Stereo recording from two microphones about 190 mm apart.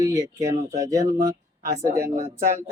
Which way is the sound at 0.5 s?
40° right (ahead or behind).